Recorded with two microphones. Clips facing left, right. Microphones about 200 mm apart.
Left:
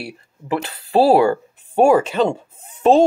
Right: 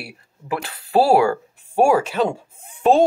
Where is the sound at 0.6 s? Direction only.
25° left (ahead or behind).